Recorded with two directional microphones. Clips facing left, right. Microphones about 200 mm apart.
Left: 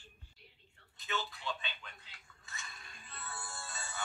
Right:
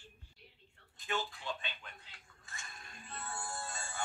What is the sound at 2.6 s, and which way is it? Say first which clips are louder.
Music: right 2 dB; 45° right (ahead or behind).